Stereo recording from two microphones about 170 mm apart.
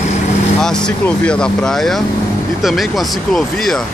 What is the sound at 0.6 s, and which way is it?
Speech, 5° left (ahead or behind).